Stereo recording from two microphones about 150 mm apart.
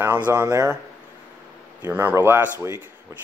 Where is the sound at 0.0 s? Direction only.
15° right (ahead or behind).